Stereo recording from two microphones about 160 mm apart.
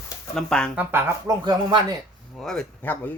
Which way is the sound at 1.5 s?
25° right (ahead or behind).